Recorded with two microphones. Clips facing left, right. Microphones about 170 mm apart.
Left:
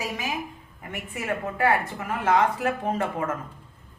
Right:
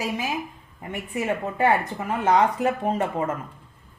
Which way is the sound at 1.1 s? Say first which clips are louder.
Right 3 dB; 20° right (ahead or behind).